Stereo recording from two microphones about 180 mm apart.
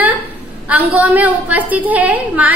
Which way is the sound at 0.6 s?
10° right (ahead or behind).